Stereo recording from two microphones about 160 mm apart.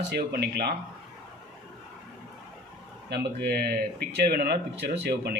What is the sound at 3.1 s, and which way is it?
Speech, 85° right.